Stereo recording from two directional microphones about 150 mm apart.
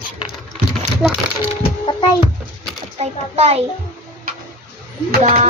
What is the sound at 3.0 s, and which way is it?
Speech, 45° right (ahead or behind).